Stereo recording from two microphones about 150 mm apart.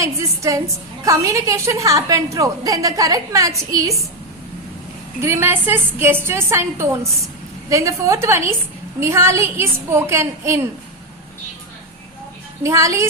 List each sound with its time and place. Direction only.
0.0 s a woman's voice: 20° right (ahead or behind)
5.2 s a woman's voice: 15° right (ahead or behind)
12.6 s a woman's voice: 20° right (ahead or behind)